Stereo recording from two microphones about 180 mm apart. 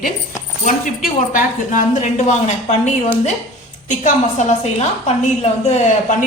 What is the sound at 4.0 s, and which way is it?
A woman's voice, 40° left (ahead or behind).